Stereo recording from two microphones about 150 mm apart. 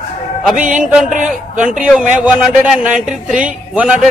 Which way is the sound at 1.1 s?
60° right (ahead or behind).